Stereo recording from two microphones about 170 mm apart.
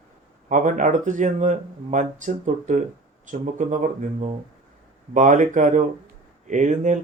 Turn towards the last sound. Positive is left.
turn(degrees=-45)  # may be behind; listen again after turning